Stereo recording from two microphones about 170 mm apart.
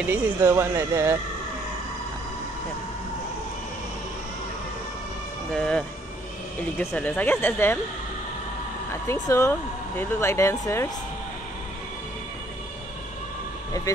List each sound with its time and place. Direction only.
0.0 s speech: 10° right (ahead or behind)
5.5 s speech: 5° left (ahead or behind)
9.0 s speech: 15° left (ahead or behind)
13.9 s speech: 20° left (ahead or behind)